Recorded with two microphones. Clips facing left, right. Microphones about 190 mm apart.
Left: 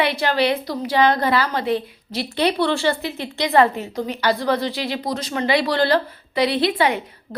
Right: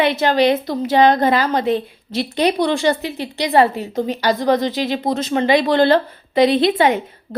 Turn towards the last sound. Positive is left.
turn(degrees=-25)  # may be behind; listen again after turning